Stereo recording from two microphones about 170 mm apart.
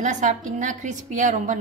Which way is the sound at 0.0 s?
45° right (ahead or behind).